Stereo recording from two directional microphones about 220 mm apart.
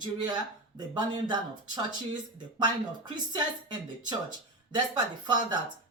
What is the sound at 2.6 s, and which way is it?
Speech, 20° right (ahead or behind).